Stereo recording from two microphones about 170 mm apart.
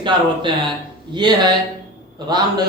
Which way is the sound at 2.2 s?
25° right (ahead or behind).